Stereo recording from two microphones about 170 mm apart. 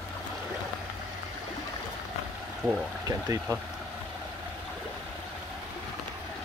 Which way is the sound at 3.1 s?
15° right (ahead or behind).